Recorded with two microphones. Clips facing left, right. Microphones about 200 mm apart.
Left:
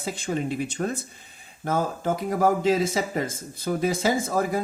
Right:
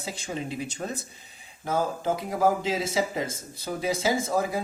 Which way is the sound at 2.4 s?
55° left (ahead or behind).